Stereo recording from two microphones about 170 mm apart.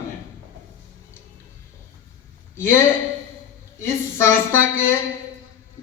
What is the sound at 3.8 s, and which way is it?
A man's voice, 15° left (ahead or behind).